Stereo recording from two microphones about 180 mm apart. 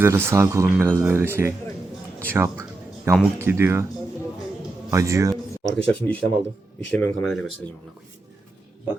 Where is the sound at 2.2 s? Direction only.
15° right (ahead or behind).